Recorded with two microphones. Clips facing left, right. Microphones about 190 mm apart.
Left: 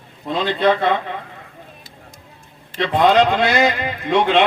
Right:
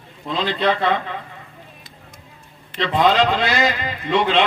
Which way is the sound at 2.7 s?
55° left (ahead or behind).